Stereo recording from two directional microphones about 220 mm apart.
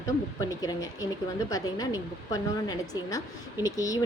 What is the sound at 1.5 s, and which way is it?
Speech, 15° left (ahead or behind).